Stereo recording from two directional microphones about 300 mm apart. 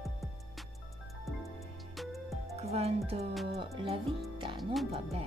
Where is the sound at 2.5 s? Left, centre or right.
Right.